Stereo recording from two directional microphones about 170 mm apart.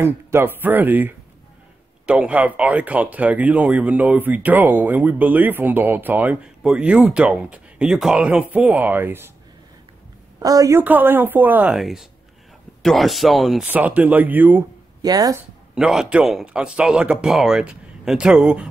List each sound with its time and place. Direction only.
0.0 s speech: 15° right (ahead or behind)
10.4 s a woman's voice: 20° right (ahead or behind)
15.0 s speech: 20° right (ahead or behind)
15.7 s speech: 5° right (ahead or behind)